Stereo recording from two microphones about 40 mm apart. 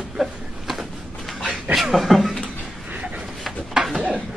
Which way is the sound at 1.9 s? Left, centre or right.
Centre.